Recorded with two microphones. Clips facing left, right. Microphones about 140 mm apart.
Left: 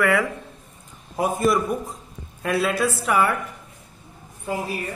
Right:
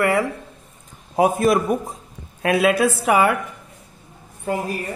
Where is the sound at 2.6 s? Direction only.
85° right.